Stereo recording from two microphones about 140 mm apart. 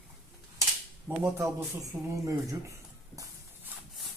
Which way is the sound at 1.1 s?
15° right (ahead or behind).